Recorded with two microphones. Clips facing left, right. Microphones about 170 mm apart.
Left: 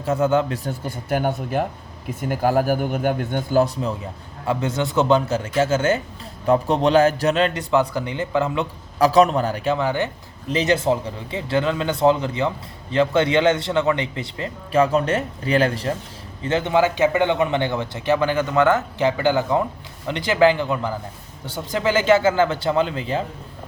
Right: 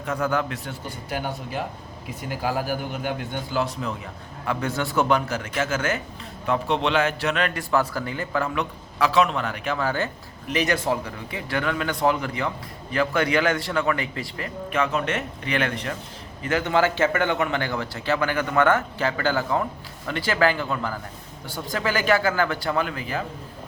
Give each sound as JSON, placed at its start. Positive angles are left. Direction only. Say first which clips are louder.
{"t": 0.0, "sound": "a man's voice", "louder": "left 6 dB", "side_deg": 25}
{"t": 4.4, "sound": "a man's voice", "louder": "left 4 dB", "side_deg": 20}
{"t": 9.0, "sound": "a man's voice", "louder": "left 6 dB", "side_deg": 40}
{"t": 9.7, "sound": "a man's voice", "louder": "left 3 dB", "side_deg": 20}